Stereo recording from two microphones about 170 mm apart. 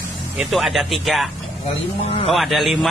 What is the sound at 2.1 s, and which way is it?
Speech, 35° left (ahead or behind).